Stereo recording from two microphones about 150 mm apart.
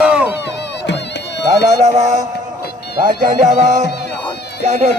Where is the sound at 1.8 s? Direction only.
50° right (ahead or behind).